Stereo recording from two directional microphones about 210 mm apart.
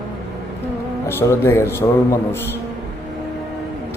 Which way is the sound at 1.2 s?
10° left (ahead or behind).